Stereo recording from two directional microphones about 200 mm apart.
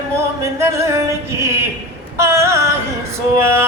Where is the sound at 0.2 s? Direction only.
15° right (ahead or behind).